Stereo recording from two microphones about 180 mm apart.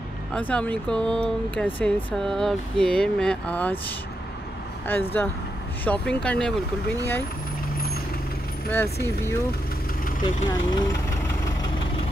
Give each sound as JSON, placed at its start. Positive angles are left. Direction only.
{"t": 0.3, "sound": "speech", "side_deg": 5}
{"t": 4.8, "sound": "speech", "side_deg": 10}
{"t": 8.6, "sound": "speech", "side_deg": 15}
{"t": 10.2, "sound": "vehicle", "side_deg": 20}